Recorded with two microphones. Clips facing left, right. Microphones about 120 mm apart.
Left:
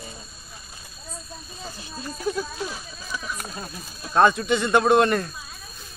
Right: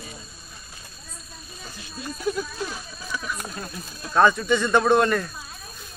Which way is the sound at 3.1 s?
5° left (ahead or behind).